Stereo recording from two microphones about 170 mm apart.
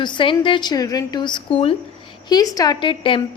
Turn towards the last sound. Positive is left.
turn(degrees=30)  # may be behind; listen again after turning